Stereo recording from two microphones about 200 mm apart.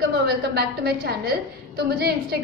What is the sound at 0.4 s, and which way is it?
A woman's voice, 55° right (ahead or behind).